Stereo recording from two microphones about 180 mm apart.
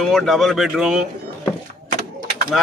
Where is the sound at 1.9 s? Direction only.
50° right (ahead or behind).